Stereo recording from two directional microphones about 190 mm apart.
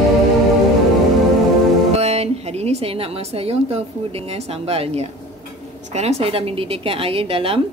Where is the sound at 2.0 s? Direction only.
35° right (ahead or behind).